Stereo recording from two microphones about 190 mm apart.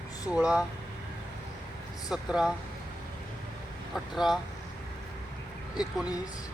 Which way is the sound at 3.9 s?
Centre (ahead or behind).